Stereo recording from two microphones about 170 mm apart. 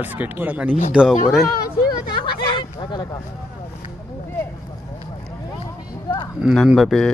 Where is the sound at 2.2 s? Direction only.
30° left (ahead or behind).